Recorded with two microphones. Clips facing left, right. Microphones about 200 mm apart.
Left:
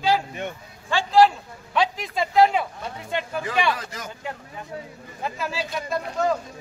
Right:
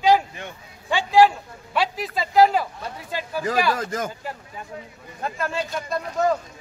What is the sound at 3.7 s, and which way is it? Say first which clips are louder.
Speech: right 4 dB; 50° right (ahead or behind).